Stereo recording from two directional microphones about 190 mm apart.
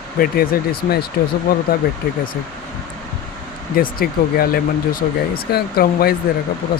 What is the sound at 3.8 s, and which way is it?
Speech, 50° left (ahead or behind).